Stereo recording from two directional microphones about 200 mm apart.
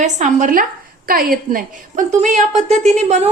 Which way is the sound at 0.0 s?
40° right (ahead or behind).